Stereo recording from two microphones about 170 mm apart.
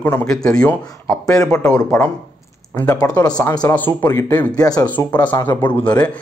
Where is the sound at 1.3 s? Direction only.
20° left (ahead or behind).